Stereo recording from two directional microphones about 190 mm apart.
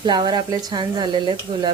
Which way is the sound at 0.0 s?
20° right (ahead or behind).